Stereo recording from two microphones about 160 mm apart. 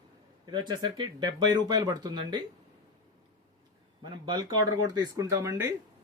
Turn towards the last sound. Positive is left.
turn(degrees=-20)  # may be behind; listen again after turning